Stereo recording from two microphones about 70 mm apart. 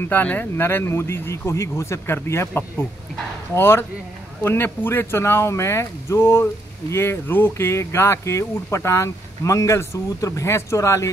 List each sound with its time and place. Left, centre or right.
0.0 s speech: left